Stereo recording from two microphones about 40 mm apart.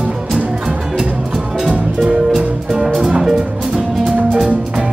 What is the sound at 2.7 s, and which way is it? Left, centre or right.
Music, centre.